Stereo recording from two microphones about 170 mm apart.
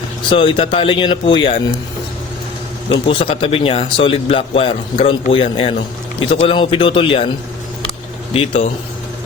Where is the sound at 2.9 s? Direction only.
35° left (ahead or behind).